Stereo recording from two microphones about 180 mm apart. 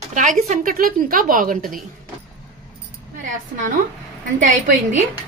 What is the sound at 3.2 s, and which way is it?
Speech, 45° right (ahead or behind).